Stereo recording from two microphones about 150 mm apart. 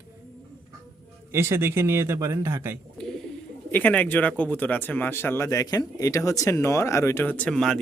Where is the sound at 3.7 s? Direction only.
10° left (ahead or behind).